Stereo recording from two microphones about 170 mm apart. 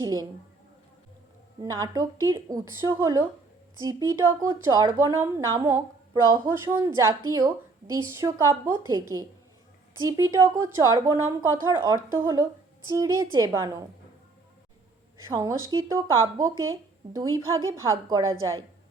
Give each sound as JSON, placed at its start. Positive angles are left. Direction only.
{"t": 0.0, "sound": "a woman's voice", "side_deg": -20}
{"t": 1.6, "sound": "a woman's voice", "side_deg": -20}
{"t": 15.3, "sound": "a woman's voice", "side_deg": -20}